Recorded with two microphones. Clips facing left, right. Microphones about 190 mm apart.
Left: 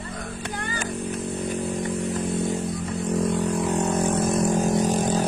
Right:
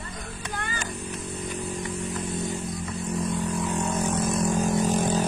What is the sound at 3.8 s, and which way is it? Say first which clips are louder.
Vehicle: left 4 dB; 60° left (ahead or behind).